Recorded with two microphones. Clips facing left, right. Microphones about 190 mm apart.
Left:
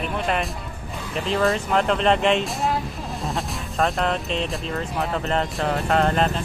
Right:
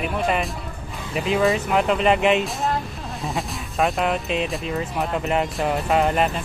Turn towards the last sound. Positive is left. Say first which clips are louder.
# right 1 dB
turn(degrees=-5)  # may be behind; listen again after turning